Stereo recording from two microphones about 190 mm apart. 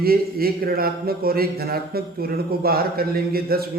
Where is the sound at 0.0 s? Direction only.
55° right (ahead or behind).